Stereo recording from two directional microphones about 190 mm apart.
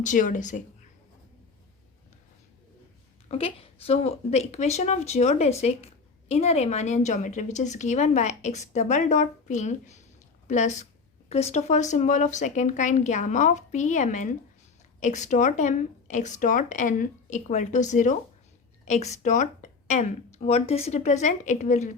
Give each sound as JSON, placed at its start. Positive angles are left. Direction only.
{"t": 0.0, "sound": "speech", "side_deg": 40}
{"t": 3.2, "sound": "a woman's voice", "side_deg": 30}